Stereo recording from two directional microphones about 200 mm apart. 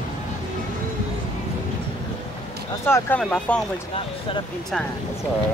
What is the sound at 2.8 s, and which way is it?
Speech, 10° left (ahead or behind).